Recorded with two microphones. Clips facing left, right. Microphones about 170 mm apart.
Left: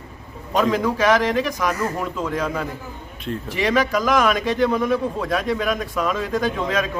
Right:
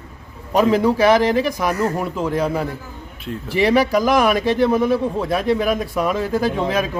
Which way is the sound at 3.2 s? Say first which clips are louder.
Right 4 dB; 5° right (ahead or behind).